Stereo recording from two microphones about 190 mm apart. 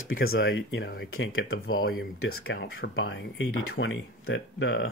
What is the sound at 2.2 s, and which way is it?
Speech, 60° left (ahead or behind).